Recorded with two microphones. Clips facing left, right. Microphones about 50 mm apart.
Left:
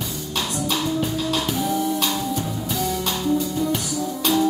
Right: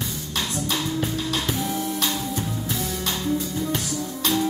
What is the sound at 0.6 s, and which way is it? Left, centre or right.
Music, centre.